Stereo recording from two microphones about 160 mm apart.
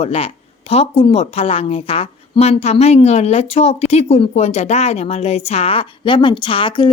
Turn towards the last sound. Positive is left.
turn(degrees=30)  # may be behind; listen again after turning